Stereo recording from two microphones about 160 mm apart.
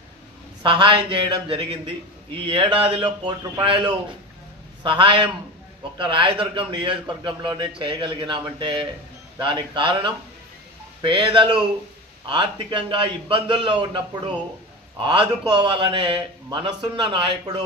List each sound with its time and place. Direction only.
0.6 s a man's voice: 30° right (ahead or behind)